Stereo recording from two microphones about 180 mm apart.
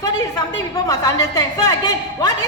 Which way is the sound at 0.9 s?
20° left (ahead or behind).